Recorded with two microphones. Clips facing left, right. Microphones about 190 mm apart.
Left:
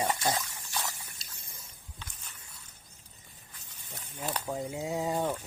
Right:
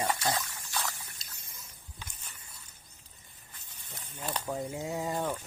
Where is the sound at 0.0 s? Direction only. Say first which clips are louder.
Left 1 dB; 20° left (ahead or behind).